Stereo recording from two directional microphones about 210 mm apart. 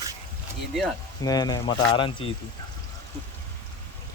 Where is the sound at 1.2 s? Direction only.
20° left (ahead or behind).